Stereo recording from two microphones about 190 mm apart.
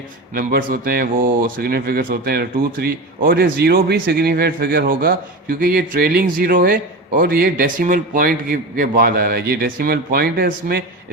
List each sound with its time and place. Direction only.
0.3 s speech: 50° right (ahead or behind)